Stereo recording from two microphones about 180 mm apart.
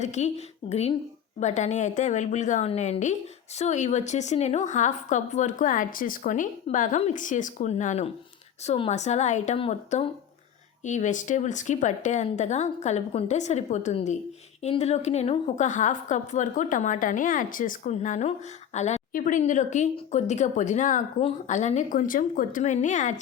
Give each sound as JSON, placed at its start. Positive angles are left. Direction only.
{"t": 0.0, "sound": "a woman's voice", "side_deg": 40}